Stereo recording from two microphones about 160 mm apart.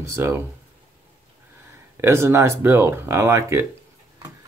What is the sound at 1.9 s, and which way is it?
Speech, 15° right (ahead or behind).